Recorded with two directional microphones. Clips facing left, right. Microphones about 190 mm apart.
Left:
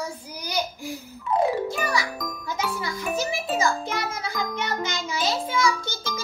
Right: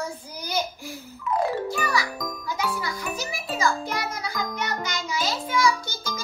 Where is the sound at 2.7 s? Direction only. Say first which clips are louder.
Left 3 dB; 25° left (ahead or behind).